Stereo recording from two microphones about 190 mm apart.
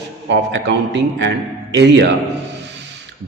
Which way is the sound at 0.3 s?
70° right (ahead or behind).